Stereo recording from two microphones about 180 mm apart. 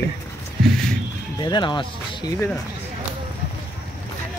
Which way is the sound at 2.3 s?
15° left (ahead or behind).